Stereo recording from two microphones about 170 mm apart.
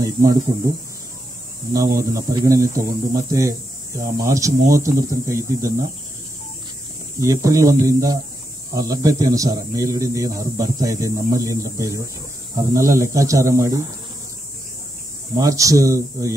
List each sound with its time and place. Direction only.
0.0 s speech: 20° right (ahead or behind)
1.7 s speech: 20° right (ahead or behind)
7.2 s speech: 20° right (ahead or behind)
15.3 s speech: 20° right (ahead or behind)